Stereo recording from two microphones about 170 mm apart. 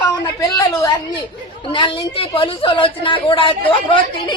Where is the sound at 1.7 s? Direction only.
30° left (ahead or behind).